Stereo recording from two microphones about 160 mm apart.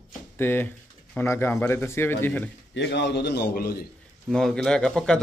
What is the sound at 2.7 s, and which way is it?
A man's voice, 90° left.